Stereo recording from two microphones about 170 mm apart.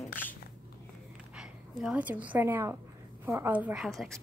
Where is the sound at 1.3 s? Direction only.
5° right (ahead or behind).